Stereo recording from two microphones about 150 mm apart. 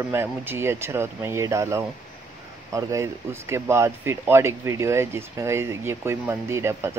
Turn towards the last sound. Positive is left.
turn(degrees=-15)  # may be behind; listen again after turning